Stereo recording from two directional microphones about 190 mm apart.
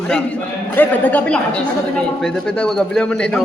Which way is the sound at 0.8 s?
10° left (ahead or behind).